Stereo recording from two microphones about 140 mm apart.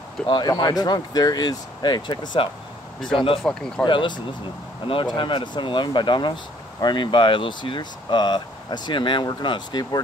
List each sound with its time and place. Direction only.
0.3 s speech: 30° left (ahead or behind)